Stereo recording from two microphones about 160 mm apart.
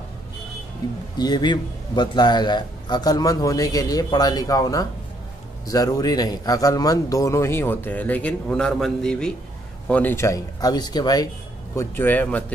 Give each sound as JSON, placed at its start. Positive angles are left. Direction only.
{"t": 1.1, "sound": "a man's voice", "side_deg": 25}